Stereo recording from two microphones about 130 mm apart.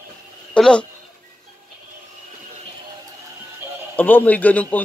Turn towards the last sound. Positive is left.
turn(degrees=10)  # may be behind; listen again after turning